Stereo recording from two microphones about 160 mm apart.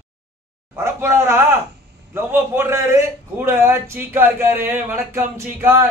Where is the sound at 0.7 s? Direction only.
15° right (ahead or behind).